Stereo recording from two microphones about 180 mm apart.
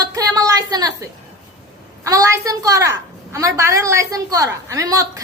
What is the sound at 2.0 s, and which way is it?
A woman's voice, 20° right (ahead or behind).